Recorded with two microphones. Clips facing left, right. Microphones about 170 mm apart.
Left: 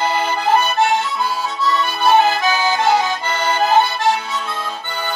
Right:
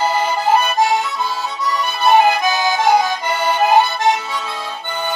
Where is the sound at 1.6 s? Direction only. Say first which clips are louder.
Left 1 dB; 15° right (ahead or behind).